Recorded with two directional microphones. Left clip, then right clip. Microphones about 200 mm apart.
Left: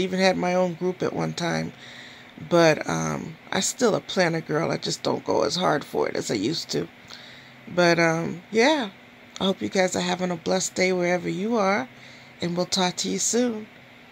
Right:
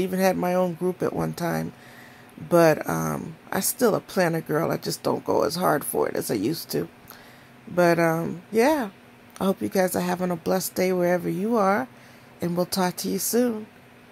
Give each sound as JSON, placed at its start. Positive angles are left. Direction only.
{"t": 0.0, "sound": "speech", "side_deg": -10}